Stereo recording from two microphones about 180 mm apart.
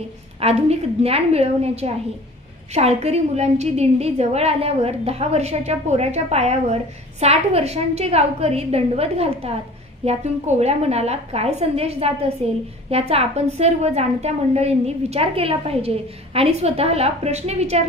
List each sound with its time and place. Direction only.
0.3 s a woman's voice: 35° right (ahead or behind)